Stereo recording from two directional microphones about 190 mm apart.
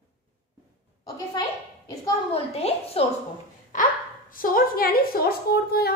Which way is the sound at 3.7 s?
45° left (ahead or behind).